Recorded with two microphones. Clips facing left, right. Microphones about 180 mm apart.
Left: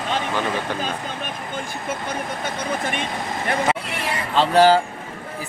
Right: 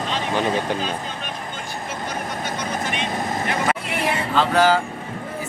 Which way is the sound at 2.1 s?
55° left (ahead or behind).